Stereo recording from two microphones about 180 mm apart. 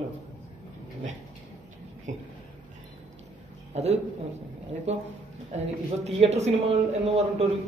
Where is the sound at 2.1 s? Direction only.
40° right (ahead or behind).